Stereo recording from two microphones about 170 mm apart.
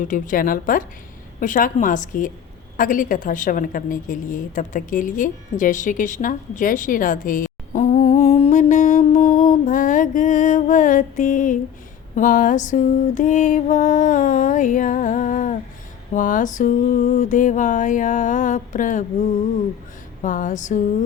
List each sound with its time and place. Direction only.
0.0 s mantra: 50° left (ahead or behind)
2.7 s a sound: 50° left (ahead or behind)
12.1 s music: 50° left (ahead or behind)
16.1 s mantra: 50° left (ahead or behind)
20.2 s mantra: 50° left (ahead or behind)